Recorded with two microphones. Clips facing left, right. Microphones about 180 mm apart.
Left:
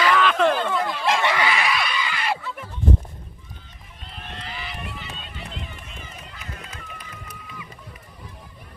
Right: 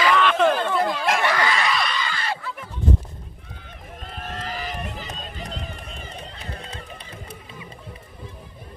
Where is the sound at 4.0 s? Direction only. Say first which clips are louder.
Right 5 dB; 45° right (ahead or behind); by 7.7 s 30° right (ahead or behind).